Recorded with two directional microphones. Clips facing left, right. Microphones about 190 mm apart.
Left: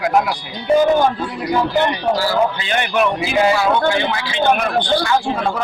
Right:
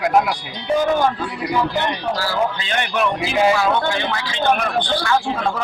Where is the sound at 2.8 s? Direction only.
5° left (ahead or behind).